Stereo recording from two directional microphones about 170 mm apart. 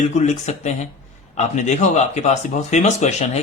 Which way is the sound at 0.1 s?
40° left (ahead or behind).